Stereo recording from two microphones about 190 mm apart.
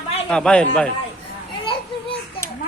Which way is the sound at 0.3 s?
5° left (ahead or behind).